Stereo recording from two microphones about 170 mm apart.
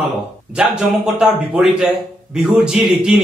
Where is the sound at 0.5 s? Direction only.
5° right (ahead or behind).